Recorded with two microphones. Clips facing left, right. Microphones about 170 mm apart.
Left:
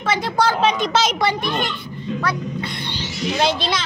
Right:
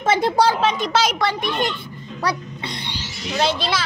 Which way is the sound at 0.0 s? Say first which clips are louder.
Right 4 dB; 50° right (ahead or behind).